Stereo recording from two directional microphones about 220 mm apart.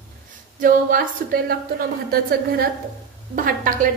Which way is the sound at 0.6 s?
40° right (ahead or behind).